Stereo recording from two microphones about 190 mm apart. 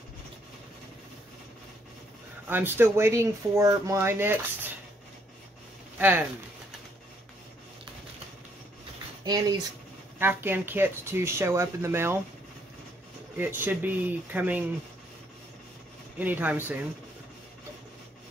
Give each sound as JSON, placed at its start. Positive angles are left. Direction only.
{"t": 2.4, "sound": "speech", "side_deg": -10}
{"t": 5.9, "sound": "speech", "side_deg": -10}
{"t": 9.2, "sound": "speech", "side_deg": -20}
{"t": 13.4, "sound": "speech", "side_deg": -10}
{"t": 16.2, "sound": "speech", "side_deg": -10}